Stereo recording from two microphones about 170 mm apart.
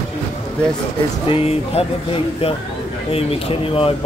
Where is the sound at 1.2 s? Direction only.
35° left (ahead or behind).